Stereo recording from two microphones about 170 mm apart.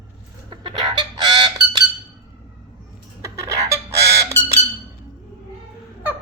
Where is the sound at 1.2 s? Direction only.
25° right (ahead or behind).